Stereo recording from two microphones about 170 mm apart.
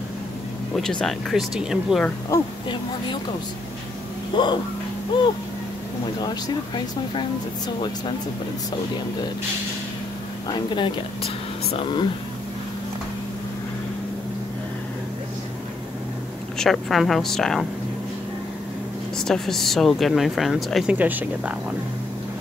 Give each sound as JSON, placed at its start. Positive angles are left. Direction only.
{"t": 1.0, "sound": "speech", "side_deg": 0}
{"t": 2.0, "sound": "speech", "side_deg": 20}
{"t": 4.3, "sound": "speech", "side_deg": 25}
{"t": 7.2, "sound": "speech", "side_deg": 25}
{"t": 10.5, "sound": "speech", "side_deg": 30}
{"t": 16.5, "sound": "speech", "side_deg": 0}
{"t": 19.1, "sound": "speech", "side_deg": 5}